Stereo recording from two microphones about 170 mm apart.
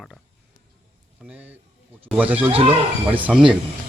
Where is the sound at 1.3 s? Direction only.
10° right (ahead or behind).